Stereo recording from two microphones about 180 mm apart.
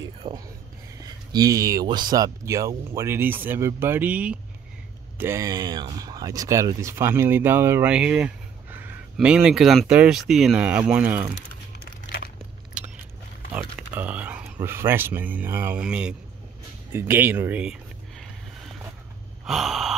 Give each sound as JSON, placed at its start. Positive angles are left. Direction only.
{"t": 0.2, "sound": "speech", "side_deg": -25}
{"t": 11.8, "sound": "crumpling", "side_deg": 60}
{"t": 12.7, "sound": "biting", "side_deg": -5}
{"t": 13.5, "sound": "speech", "side_deg": -5}
{"t": 16.9, "sound": "a sound", "side_deg": -10}
{"t": 19.4, "sound": "gasp", "side_deg": 0}